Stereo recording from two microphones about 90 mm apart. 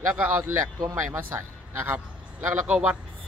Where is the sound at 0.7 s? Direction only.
40° right (ahead or behind).